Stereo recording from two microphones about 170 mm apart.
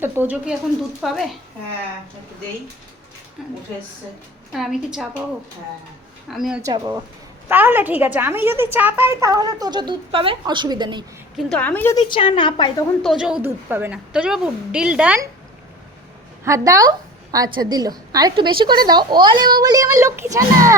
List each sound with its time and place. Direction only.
0.0 s a woman's voice: 10° right (ahead or behind)
1.0 s a woman's voice: centre (ahead or behind)
4.5 s a woman's voice: centre (ahead or behind)
6.3 s a woman's voice: centre (ahead or behind)
6.6 s a woman's voice: 20° right (ahead or behind)
11.3 s a woman's voice: 5° left (ahead or behind)
12.0 s a woman's voice: 30° left (ahead or behind)
13.0 s a woman's voice: centre (ahead or behind)
16.4 s a woman's voice: 20° right (ahead or behind)